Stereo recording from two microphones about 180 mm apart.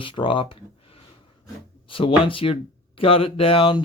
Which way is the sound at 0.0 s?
30° left (ahead or behind).